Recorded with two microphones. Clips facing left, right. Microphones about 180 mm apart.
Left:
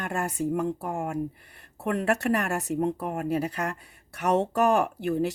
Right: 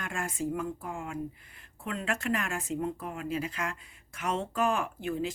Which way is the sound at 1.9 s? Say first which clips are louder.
Left 7 dB; 65° left (ahead or behind).